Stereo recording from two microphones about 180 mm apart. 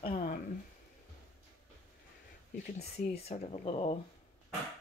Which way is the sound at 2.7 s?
35° left (ahead or behind).